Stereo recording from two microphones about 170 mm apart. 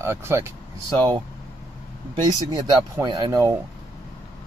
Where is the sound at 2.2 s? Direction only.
25° right (ahead or behind).